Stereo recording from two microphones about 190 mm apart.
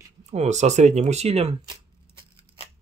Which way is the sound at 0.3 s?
35° right (ahead or behind).